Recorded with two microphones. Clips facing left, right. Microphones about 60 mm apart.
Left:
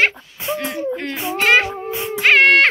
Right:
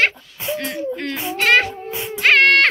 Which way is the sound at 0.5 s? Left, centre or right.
Centre.